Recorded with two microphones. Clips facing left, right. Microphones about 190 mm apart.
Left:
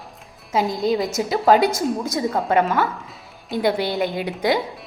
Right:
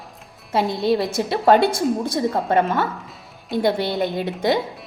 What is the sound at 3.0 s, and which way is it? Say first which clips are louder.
Music: even; centre (ahead or behind).